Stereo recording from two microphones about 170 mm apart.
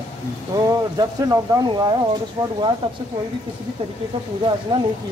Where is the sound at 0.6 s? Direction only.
20° right (ahead or behind).